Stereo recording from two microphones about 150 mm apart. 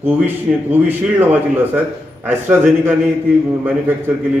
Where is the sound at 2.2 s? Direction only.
10° right (ahead or behind).